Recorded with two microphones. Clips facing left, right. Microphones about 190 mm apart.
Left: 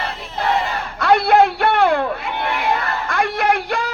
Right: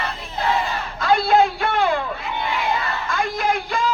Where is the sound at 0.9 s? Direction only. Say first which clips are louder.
Left 3 dB; 65° left (ahead or behind).